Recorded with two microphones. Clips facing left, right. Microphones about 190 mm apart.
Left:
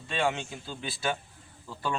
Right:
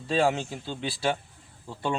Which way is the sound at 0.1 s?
35° right (ahead or behind).